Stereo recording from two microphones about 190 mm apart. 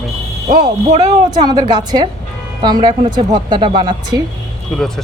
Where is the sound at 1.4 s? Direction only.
20° right (ahead or behind).